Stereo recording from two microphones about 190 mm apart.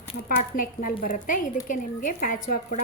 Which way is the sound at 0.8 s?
45° left (ahead or behind).